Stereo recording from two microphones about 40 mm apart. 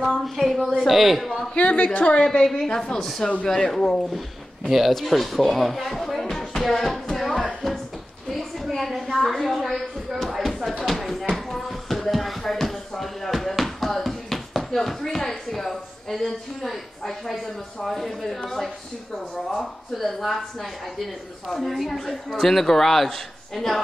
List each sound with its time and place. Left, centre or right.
0.2 s speech: centre
1.5 s a woman's voice: left
2.4 s a woman's voice: centre
4.6 s a man's voice: centre
8.3 s a sound: centre
14.6 s knock: centre
15.0 s a woman's voice: centre